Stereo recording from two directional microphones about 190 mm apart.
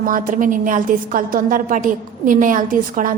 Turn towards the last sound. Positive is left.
turn(degrees=-45)  # may be behind; listen again after turning